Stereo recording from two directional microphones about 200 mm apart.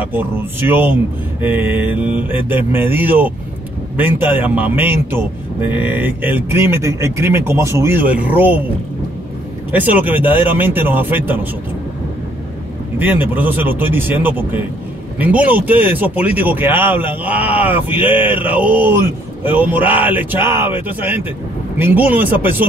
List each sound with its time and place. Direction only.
0.0 s speech: 10° right (ahead or behind)
9.7 s speech: 10° right (ahead or behind)
13.0 s speech: 10° right (ahead or behind)